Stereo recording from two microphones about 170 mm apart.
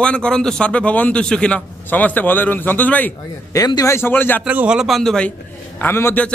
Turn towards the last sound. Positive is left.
turn(degrees=10)  # may be behind; listen again after turning